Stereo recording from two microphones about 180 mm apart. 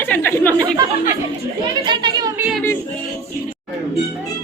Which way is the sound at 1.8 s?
25° right (ahead or behind).